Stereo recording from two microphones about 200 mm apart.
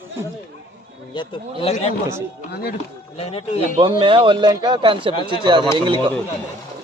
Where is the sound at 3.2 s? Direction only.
30° left (ahead or behind).